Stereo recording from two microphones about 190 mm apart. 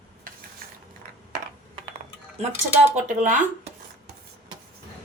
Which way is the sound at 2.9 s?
40° right (ahead or behind).